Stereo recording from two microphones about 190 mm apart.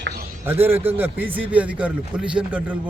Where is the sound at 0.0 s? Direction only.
55° right (ahead or behind).